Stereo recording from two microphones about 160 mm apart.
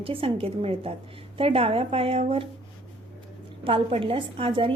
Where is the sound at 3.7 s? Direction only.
35° right (ahead or behind).